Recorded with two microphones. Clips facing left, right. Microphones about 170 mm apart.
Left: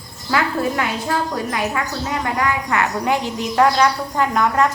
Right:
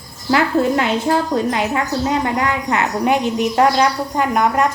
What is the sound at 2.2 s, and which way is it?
A woman's voice, 25° right (ahead or behind).